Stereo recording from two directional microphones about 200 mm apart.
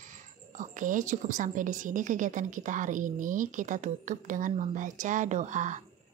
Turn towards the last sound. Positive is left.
turn(degrees=-40)  # may be behind; listen again after turning